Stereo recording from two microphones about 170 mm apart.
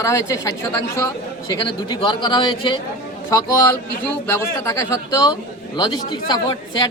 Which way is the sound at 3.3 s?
20° left (ahead or behind).